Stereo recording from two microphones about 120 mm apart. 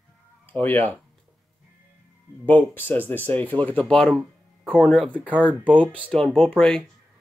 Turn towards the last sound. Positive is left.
turn(degrees=5)  # may be behind; listen again after turning